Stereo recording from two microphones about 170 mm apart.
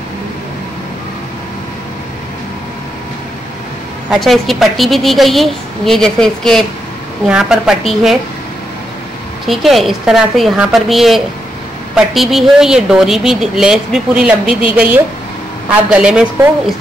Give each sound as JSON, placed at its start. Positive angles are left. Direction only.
{"t": 4.1, "sound": "speech", "side_deg": 0}
{"t": 9.5, "sound": "speech", "side_deg": 0}